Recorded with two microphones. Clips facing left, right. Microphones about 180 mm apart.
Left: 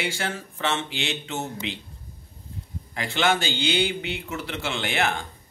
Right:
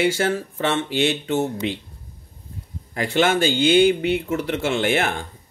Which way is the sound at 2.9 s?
45° right (ahead or behind).